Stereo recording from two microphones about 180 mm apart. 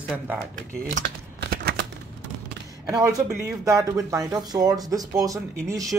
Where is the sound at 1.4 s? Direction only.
65° right (ahead or behind).